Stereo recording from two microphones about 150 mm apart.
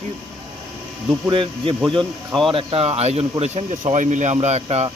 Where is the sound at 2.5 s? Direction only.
35° right (ahead or behind).